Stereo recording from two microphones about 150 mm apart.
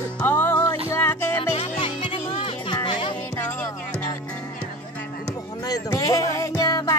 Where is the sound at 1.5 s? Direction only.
40° left (ahead or behind).